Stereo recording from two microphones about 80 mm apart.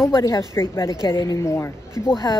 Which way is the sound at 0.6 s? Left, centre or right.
Left.